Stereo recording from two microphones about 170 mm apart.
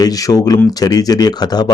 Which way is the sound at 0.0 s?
20° left (ahead or behind).